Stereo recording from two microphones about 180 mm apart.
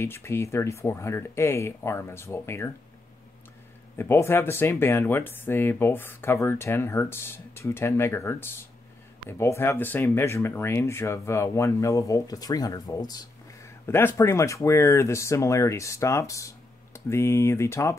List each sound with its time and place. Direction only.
0.0 s speech: 15° left (ahead or behind)
4.0 s speech: 15° left (ahead or behind)